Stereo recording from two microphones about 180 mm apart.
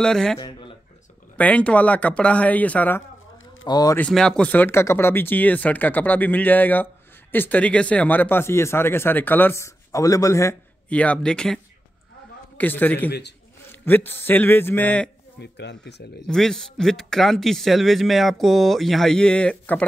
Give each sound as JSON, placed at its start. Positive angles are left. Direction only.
{"t": 0.0, "sound": "speech", "side_deg": 5}
{"t": 0.4, "sound": "a sound", "side_deg": 25}
{"t": 1.3, "sound": "speech", "side_deg": 10}
{"t": 3.6, "sound": "speech", "side_deg": 20}
{"t": 4.0, "sound": "speech", "side_deg": 5}
{"t": 15.4, "sound": "speech", "side_deg": 75}
{"t": 16.3, "sound": "speech", "side_deg": 5}